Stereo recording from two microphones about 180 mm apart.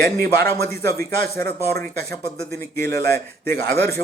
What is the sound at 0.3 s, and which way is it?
Speech, 15° left (ahead or behind).